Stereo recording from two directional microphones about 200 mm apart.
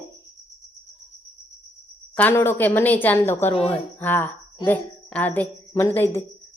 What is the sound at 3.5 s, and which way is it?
Speech, 30° left (ahead or behind).